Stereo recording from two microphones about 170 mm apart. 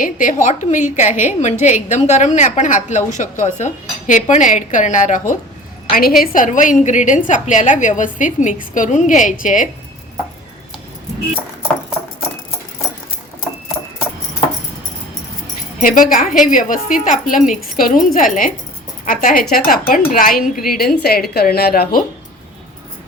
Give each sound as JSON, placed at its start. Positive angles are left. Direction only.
{"t": 0.0, "sound": "a woman's voice", "side_deg": 50}
{"t": 15.8, "sound": "a woman's voice", "side_deg": 55}